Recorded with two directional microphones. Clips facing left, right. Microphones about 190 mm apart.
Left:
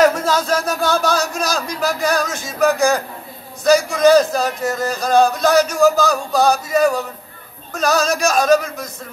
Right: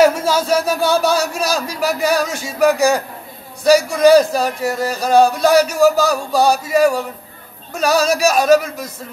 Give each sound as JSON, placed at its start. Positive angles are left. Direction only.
{"t": 0.0, "sound": "speech", "side_deg": -10}